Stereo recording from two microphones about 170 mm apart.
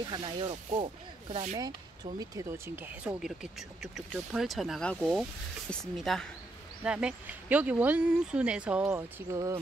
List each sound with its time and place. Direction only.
0.1 s speech: 30° right (ahead or behind)
0.7 s rub: 40° right (ahead or behind)
2.1 s speech: 15° right (ahead or behind)